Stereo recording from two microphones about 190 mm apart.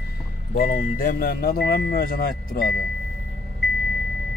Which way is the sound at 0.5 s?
50° left (ahead or behind).